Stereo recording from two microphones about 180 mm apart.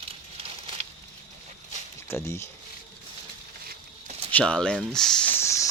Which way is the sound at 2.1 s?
15° left (ahead or behind).